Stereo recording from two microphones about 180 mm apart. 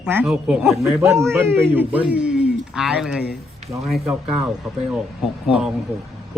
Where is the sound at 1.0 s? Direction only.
15° right (ahead or behind).